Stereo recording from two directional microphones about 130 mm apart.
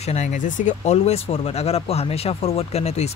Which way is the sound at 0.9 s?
50° left (ahead or behind).